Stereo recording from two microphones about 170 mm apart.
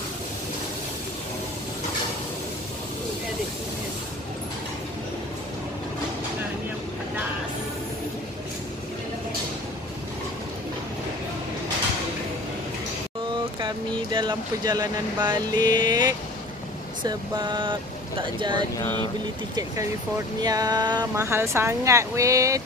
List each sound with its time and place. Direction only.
13.6 s speech: 25° right (ahead or behind)
20.4 s speech: 20° right (ahead or behind)